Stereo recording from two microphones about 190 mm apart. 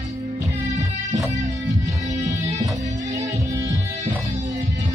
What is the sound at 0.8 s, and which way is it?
Music, 20° right (ahead or behind).